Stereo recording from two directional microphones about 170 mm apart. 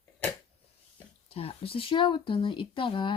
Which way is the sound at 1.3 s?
35° left (ahead or behind).